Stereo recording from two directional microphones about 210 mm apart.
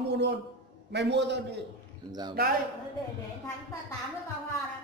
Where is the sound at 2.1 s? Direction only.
20° right (ahead or behind).